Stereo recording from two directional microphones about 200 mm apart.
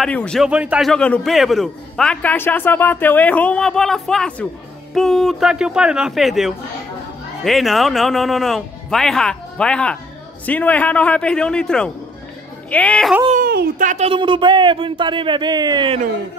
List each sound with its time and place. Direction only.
0.0 s a man's voice: 5° left (ahead or behind)
13.3 s speech: 45° right (ahead or behind); by 16.0 s 25° right (ahead or behind)